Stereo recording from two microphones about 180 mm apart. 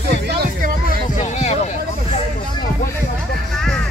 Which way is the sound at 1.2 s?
40° left (ahead or behind).